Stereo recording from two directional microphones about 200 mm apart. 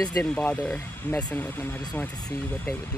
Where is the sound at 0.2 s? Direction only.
5° left (ahead or behind).